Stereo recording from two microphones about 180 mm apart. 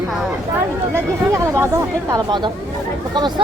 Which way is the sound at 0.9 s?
15° right (ahead or behind).